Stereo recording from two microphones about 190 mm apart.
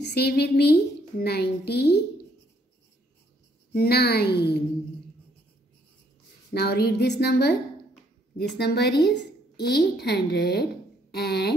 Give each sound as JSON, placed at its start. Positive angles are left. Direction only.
{"t": 0.0, "sound": "a woman's voice", "side_deg": 60}
{"t": 3.7, "sound": "a woman's voice", "side_deg": 55}
{"t": 6.5, "sound": "a woman's voice", "side_deg": 55}
{"t": 8.5, "sound": "a woman's voice", "side_deg": 60}